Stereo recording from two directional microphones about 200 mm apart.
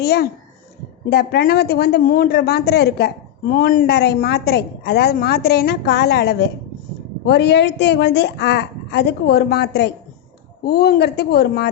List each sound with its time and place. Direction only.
0.0 s a woman's voice: 55° left (ahead or behind)